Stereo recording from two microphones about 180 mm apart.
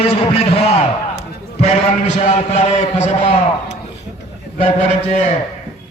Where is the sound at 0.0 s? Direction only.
35° left (ahead or behind).